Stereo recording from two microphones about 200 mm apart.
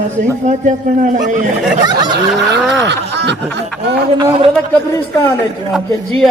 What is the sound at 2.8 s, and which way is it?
Snicker, 60° right (ahead or behind).